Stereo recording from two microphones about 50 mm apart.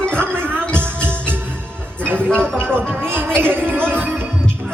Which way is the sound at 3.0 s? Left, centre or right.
Right.